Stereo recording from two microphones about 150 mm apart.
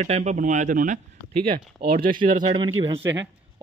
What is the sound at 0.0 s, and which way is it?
Speech, 50° right (ahead or behind).